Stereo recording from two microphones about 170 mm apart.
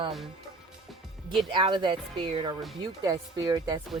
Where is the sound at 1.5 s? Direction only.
30° right (ahead or behind).